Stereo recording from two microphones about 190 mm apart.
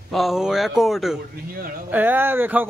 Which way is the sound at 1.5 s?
50° right (ahead or behind).